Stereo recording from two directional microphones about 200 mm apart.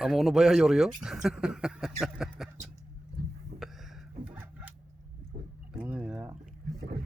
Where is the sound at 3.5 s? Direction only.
50° right (ahead or behind).